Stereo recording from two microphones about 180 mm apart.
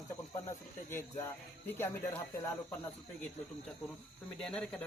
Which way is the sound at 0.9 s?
15° left (ahead or behind).